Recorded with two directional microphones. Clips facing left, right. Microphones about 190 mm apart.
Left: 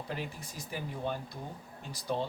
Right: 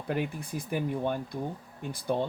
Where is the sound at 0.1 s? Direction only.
55° right (ahead or behind).